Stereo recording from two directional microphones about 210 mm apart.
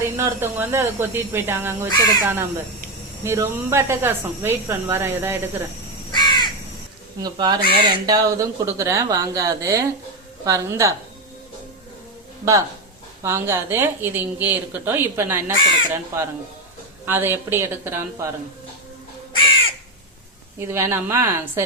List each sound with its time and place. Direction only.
0.2 s speech: 10° right (ahead or behind)
6.1 s crow: 20° left (ahead or behind)
7.2 s speech: 20° right (ahead or behind)
13.2 s speech: 10° right (ahead or behind)
20.6 s speech: 10° right (ahead or behind)